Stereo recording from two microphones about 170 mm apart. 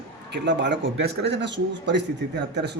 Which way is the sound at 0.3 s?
90° right.